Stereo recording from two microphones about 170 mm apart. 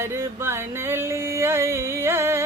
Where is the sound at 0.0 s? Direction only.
15° right (ahead or behind).